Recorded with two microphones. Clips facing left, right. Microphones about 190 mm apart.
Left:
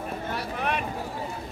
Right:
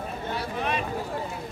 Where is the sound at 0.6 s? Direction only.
55° left (ahead or behind).